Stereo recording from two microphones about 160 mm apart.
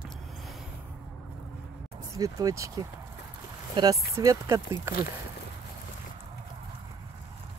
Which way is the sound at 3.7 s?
25° right (ahead or behind).